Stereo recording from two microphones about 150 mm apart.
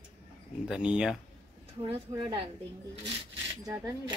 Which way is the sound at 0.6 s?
5° right (ahead or behind).